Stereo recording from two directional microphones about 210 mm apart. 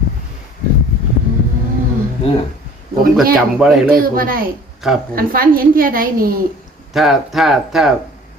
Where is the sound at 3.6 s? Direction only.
Centre (ahead or behind).